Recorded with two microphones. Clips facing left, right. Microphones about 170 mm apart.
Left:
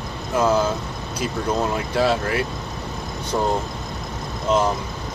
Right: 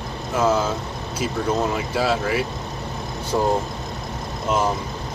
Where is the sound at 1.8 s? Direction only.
5° right (ahead or behind).